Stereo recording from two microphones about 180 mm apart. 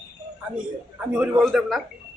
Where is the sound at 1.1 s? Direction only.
5° right (ahead or behind).